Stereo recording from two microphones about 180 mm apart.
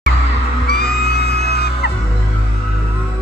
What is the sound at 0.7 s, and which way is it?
Music, 60° left (ahead or behind).